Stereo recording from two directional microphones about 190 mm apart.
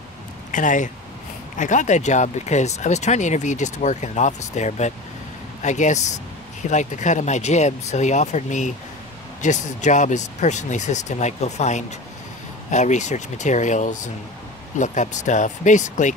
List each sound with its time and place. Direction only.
0.5 s speech: 40° left (ahead or behind)